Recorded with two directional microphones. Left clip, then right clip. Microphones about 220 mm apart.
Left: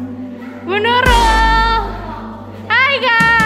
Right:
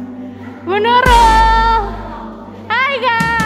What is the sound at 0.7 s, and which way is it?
Music, 20° right (ahead or behind).